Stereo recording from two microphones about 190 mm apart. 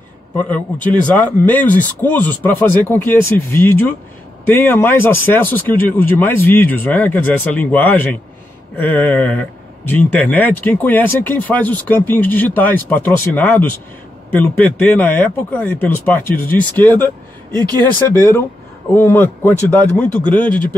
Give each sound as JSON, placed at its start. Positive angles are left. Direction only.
{"t": 1.5, "sound": "speech", "side_deg": 10}
{"t": 17.5, "sound": "speech", "side_deg": -20}
{"t": 18.1, "sound": "speech", "side_deg": 15}